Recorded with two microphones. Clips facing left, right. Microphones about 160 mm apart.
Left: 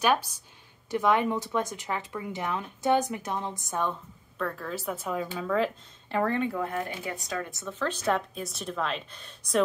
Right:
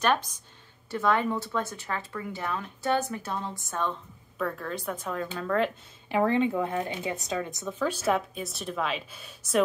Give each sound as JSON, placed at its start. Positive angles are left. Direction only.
{"t": 0.0, "sound": "speech", "side_deg": 10}
{"t": 4.4, "sound": "a woman's voice", "side_deg": 0}
{"t": 6.0, "sound": "speech", "side_deg": -15}